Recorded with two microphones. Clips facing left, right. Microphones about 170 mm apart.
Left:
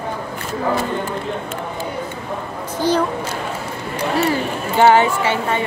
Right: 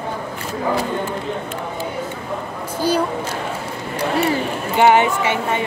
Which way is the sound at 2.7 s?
10° right (ahead or behind).